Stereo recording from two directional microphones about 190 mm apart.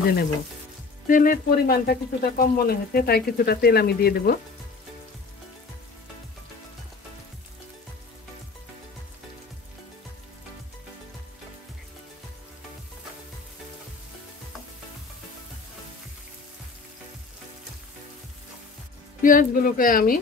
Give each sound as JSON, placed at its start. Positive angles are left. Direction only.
{"t": 1.0, "sound": "speech", "side_deg": 45}
{"t": 19.2, "sound": "speech", "side_deg": 45}